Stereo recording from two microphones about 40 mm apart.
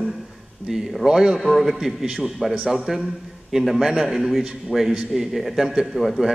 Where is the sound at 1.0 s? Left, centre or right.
Centre.